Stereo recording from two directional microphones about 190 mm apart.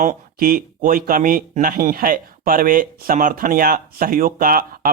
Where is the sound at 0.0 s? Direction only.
45° right (ahead or behind).